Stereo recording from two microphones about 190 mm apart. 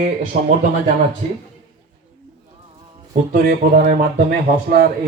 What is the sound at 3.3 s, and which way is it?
Speech, 55° right (ahead or behind).